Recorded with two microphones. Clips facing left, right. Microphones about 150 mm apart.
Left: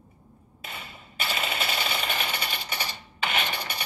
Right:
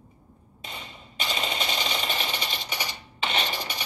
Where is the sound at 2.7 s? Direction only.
15° right (ahead or behind).